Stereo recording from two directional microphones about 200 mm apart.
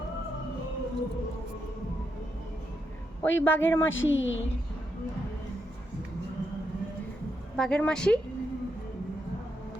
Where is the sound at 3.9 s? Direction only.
75° left (ahead or behind).